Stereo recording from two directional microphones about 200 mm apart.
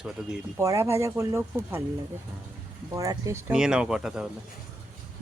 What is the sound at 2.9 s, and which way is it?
Speech, 15° right (ahead or behind).